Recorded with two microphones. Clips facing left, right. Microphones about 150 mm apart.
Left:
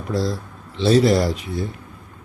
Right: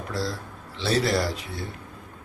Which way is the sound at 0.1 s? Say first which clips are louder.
Left 8 dB; 20° left (ahead or behind).